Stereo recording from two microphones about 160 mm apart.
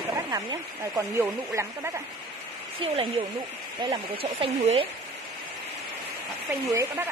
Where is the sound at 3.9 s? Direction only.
35° right (ahead or behind).